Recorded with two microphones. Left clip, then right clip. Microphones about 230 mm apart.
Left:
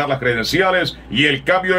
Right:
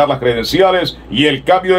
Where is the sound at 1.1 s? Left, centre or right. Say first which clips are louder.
Right 4 dB; centre.